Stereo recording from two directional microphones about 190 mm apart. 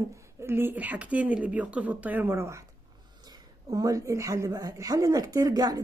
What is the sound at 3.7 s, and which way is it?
A woman's voice, 20° right (ahead or behind).